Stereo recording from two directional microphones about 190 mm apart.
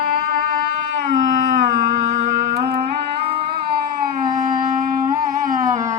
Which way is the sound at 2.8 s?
30° right (ahead or behind).